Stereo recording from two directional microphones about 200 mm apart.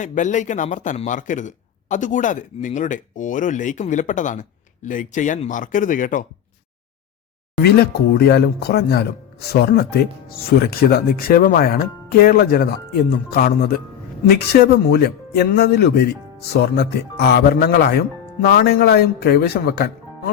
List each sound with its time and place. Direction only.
0.0 s a man's voice: 40° left (ahead or behind)
7.6 s speech: 50° left (ahead or behind)